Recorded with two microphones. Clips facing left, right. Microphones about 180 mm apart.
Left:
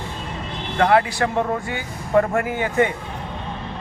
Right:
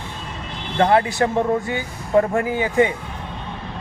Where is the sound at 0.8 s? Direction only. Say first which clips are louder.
Right 1 dB; 25° right (ahead or behind).